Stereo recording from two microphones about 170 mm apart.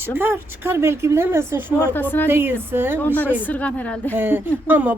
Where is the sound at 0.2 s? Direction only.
10° right (ahead or behind).